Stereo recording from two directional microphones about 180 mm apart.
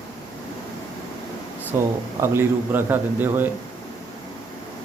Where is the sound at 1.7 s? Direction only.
15° right (ahead or behind).